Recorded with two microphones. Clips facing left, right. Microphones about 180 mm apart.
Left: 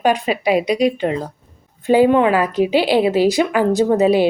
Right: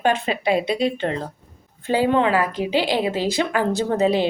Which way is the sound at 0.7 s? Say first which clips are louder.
Left 5 dB; 30° right (ahead or behind).